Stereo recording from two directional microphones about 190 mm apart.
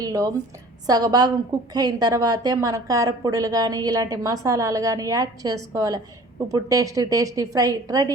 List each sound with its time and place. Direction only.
0.0 s a woman's voice: 20° right (ahead or behind)